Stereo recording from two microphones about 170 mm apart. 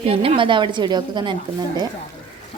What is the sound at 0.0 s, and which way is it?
Speech, 35° right (ahead or behind).